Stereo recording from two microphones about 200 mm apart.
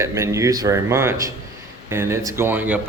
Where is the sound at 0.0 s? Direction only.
15° right (ahead or behind).